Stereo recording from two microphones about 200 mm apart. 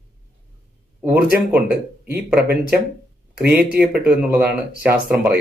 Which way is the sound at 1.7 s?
50° right (ahead or behind).